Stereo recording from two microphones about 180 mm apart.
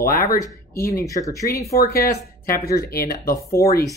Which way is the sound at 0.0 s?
50° left (ahead or behind).